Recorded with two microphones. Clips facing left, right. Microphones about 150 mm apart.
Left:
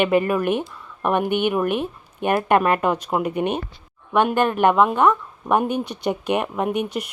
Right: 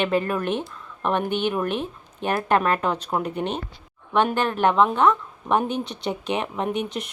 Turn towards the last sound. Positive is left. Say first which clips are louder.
# left 3 dB
turn(degrees=10)  # may be behind; listen again after turning